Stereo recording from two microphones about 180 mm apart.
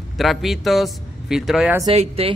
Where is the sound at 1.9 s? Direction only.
35° right (ahead or behind).